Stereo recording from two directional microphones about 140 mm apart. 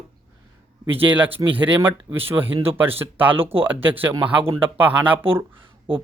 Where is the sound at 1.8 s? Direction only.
15° right (ahead or behind).